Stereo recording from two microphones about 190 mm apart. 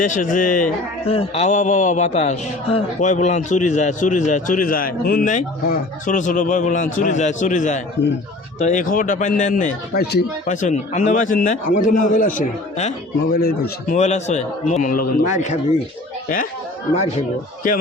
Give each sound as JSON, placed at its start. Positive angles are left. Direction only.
{"t": 0.0, "sound": "speech", "side_deg": 45}
{"t": 1.1, "sound": "a man's voice", "side_deg": 30}
{"t": 8.0, "sound": "speech", "side_deg": 65}
{"t": 8.5, "sound": "speech", "side_deg": 40}
{"t": 10.4, "sound": "a man's voice", "side_deg": 40}
{"t": 13.3, "sound": "speech", "side_deg": 55}
{"t": 13.9, "sound": "a man's voice", "side_deg": 35}
{"t": 16.9, "sound": "a man's voice", "side_deg": 35}